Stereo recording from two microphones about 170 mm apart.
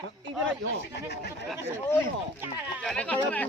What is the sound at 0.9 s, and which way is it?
Speech, 75° left (ahead or behind).